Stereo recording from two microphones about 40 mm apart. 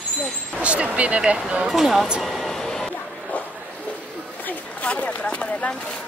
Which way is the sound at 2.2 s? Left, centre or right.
Centre.